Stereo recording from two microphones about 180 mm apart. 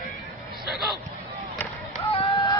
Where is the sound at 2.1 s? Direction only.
30° left (ahead or behind).